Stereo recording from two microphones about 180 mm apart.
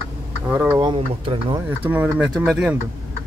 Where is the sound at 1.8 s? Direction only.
10° right (ahead or behind).